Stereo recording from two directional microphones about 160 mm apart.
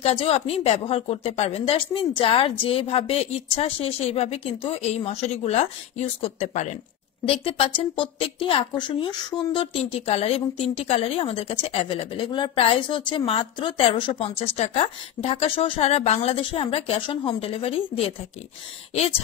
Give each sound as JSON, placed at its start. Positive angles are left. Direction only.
{"t": 0.0, "sound": "a woman's voice", "side_deg": 40}